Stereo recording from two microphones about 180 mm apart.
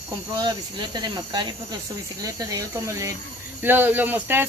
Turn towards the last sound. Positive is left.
turn(degrees=-10)  # may be behind; listen again after turning